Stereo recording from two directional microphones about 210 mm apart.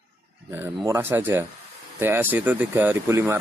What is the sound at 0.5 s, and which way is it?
Speech, 15° right (ahead or behind).